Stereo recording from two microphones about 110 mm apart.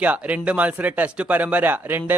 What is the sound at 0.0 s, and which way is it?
Speech, 15° right (ahead or behind).